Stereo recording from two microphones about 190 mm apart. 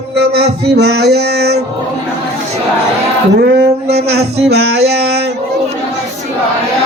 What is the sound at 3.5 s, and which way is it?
Speech, 60° right (ahead or behind).